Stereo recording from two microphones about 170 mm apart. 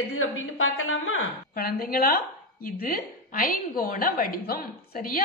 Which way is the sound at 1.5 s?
60° left (ahead or behind).